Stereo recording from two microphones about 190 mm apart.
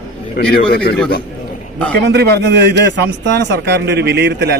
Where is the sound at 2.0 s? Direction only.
60° right (ahead or behind).